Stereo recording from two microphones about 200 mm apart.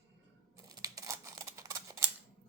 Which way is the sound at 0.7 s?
20° right (ahead or behind).